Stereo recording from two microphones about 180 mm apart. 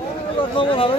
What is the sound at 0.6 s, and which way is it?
Speech, 30° left (ahead or behind).